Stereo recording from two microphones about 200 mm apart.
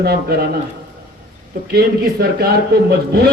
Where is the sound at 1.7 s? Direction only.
50° right (ahead or behind).